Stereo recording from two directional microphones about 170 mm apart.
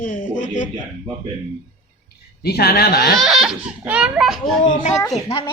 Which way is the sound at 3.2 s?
Centre (ahead or behind).